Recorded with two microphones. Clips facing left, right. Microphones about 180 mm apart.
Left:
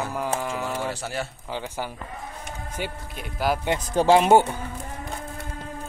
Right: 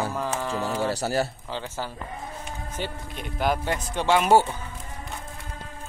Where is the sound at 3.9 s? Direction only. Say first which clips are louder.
Left 5 dB; 30° left (ahead or behind).